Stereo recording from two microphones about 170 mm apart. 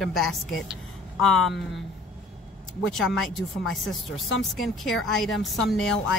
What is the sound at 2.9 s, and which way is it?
Speech, centre (ahead or behind).